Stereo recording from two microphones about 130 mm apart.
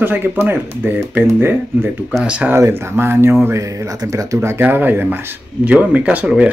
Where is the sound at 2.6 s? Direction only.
20° right (ahead or behind).